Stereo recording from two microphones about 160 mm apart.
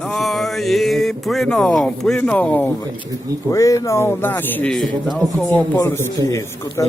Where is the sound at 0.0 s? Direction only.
Centre (ahead or behind).